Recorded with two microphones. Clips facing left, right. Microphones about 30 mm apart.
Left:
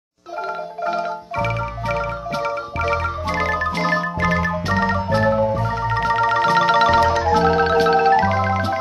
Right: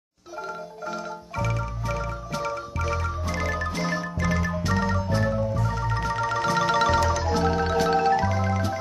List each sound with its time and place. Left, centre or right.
0.8 s music: left
3.7 s music: left
7.3 s marimba: left